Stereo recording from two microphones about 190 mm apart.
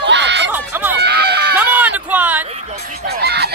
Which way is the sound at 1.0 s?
60° right (ahead or behind).